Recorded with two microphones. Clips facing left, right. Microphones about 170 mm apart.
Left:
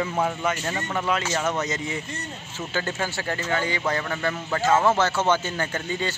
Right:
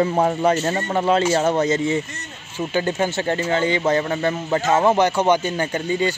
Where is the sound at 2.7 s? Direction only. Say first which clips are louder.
Right 7 dB; 20° right (ahead or behind).